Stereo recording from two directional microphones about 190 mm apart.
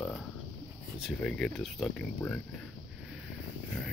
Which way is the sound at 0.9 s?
Centre (ahead or behind).